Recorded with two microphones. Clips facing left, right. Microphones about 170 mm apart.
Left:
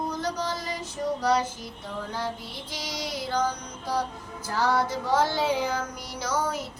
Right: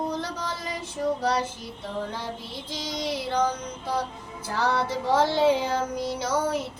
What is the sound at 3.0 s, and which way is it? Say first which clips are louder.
Child singing: right 2 dB; 25° right (ahead or behind).